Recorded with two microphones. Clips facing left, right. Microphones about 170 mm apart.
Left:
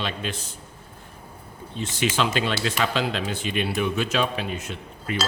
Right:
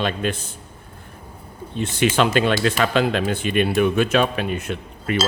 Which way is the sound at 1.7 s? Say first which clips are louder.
Right 6 dB; 60° right (ahead or behind).